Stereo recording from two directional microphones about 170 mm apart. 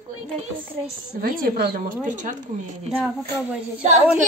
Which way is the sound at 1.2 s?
60° right (ahead or behind).